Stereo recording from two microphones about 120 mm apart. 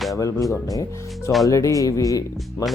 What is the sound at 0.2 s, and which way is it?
Speech, 25° left (ahead or behind).